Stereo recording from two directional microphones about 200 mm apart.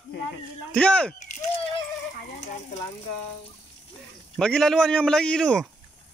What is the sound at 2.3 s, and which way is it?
Stir, 35° left (ahead or behind).